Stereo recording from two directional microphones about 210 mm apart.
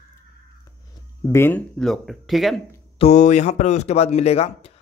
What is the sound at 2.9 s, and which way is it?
Speech, 30° left (ahead or behind).